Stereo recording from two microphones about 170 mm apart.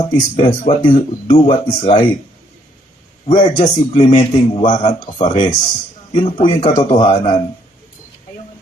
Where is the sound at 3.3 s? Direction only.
25° left (ahead or behind).